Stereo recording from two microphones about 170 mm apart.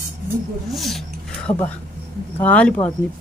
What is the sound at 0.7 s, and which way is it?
Speech, centre (ahead or behind).